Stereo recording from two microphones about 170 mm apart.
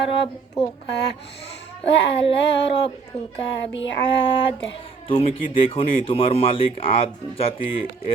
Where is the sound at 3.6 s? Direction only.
90° left.